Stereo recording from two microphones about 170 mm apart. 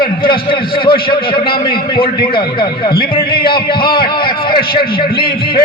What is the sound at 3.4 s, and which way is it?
Speech, 60° left (ahead or behind).